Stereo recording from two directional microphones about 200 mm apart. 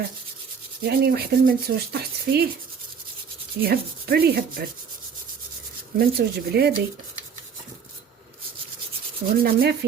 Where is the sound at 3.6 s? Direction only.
50° right (ahead or behind).